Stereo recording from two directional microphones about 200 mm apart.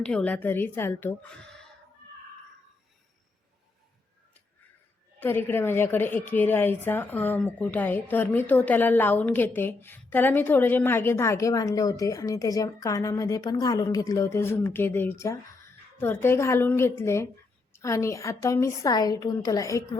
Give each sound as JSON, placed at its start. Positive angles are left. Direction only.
{"t": 0.0, "sound": "a woman's voice", "side_deg": 5}
{"t": 5.2, "sound": "a woman's voice", "side_deg": 10}